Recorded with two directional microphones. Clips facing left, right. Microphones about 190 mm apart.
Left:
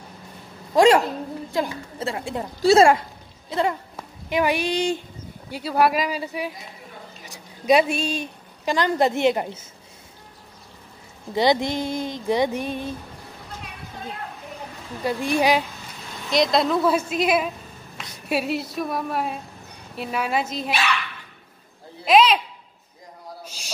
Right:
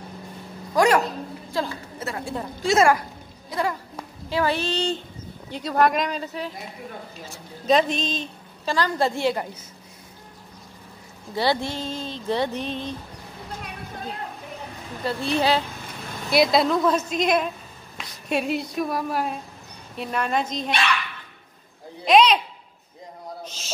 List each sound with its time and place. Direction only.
0.7 s a woman's voice: 25° left (ahead or behind)
11.3 s speech: 15° left (ahead or behind)
15.0 s speech: 15° left (ahead or behind)
16.3 s a woman's voice: 5° right (ahead or behind)
22.0 s a woman's voice: 5° left (ahead or behind)
23.4 s a sound: 10° left (ahead or behind)